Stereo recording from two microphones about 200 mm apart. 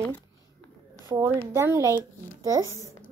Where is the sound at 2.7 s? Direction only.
15° left (ahead or behind).